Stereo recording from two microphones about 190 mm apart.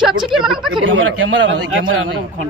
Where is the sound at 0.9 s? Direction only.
85° right.